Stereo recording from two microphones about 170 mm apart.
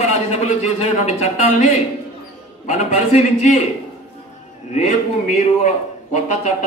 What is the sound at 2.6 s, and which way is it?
Speech, 45° left (ahead or behind).